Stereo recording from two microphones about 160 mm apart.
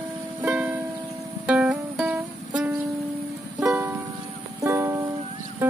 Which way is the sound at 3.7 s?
15° right (ahead or behind).